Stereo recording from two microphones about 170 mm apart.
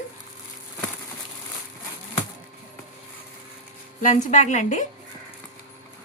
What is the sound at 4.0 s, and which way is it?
Speech, 45° left (ahead or behind).